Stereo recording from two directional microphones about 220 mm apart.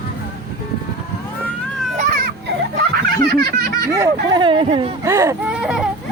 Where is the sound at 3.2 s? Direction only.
45° right (ahead or behind).